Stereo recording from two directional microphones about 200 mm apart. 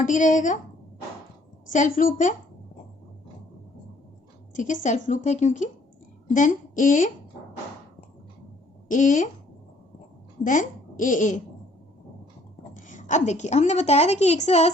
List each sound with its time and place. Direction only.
0.0 s a woman's voice: 40° left (ahead or behind)
1.6 s a woman's voice: 40° left (ahead or behind)
4.5 s a woman's voice: 40° left (ahead or behind)
8.9 s a woman's voice: 40° left (ahead or behind)
10.4 s speech: 40° left (ahead or behind)
12.7 s a woman's voice: 40° left (ahead or behind)